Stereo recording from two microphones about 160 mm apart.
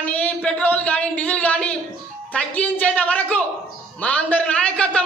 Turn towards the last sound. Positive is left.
turn(degrees=5)  # may be behind; listen again after turning